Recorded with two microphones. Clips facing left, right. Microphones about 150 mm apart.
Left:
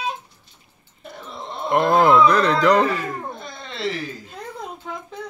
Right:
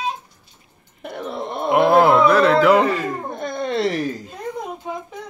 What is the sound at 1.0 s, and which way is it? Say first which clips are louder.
Wail: right 8 dB; 65° right (ahead or behind).